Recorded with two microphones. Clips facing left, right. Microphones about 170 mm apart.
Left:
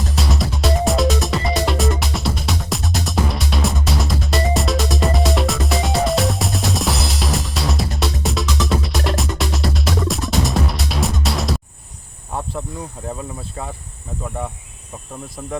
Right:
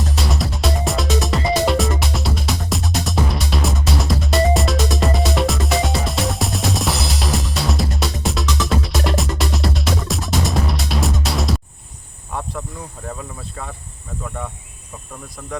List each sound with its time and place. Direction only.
0.1 s music: centre (ahead or behind)
13.6 s speech: 25° left (ahead or behind)
15.4 s speech: 20° left (ahead or behind)